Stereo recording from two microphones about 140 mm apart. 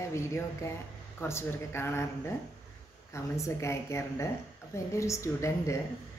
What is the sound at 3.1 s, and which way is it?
A woman's voice, 20° left (ahead or behind).